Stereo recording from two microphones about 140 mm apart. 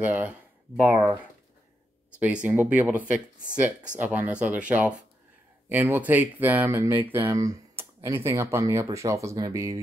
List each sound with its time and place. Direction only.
0.0 s speech: 10° right (ahead or behind)
2.1 s speech: 10° right (ahead or behind)
4.0 s speech: 10° right (ahead or behind)